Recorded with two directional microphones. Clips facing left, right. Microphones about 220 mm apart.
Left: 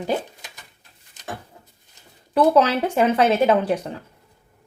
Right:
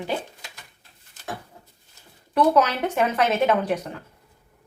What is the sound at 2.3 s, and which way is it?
Speech, 30° left (ahead or behind).